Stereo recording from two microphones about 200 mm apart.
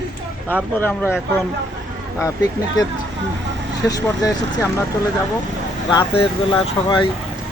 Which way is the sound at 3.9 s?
15° left (ahead or behind).